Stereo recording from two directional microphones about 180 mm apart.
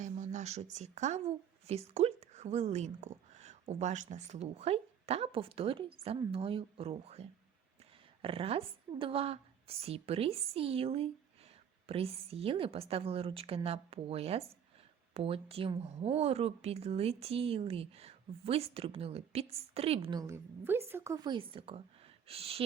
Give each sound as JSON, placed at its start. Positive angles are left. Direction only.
{"t": 0.0, "sound": "speech", "side_deg": -40}
{"t": 21.2, "sound": "speech", "side_deg": -30}